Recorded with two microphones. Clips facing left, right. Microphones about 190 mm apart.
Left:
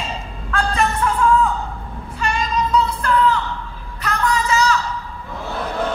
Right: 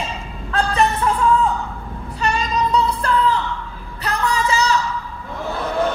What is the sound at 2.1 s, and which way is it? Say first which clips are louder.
Child singing: right 1 dB; 35° right (ahead or behind).